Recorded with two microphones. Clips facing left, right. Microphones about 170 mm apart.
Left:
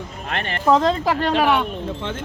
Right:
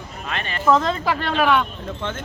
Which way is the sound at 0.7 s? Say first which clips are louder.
Left 2 dB; 35° left (ahead or behind).